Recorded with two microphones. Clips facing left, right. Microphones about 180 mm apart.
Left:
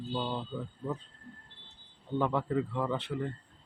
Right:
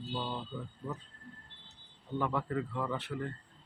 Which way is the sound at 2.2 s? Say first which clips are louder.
Left 4 dB; 20° left (ahead or behind).